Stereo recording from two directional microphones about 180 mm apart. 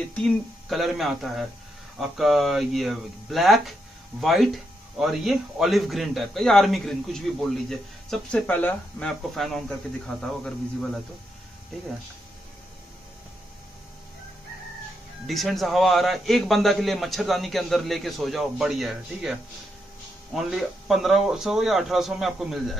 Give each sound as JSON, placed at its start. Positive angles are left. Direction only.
{"t": 0.1, "sound": "a man's voice", "side_deg": 0}
{"t": 15.2, "sound": "a man's voice", "side_deg": 0}
{"t": 20.3, "sound": "a man's voice", "side_deg": 0}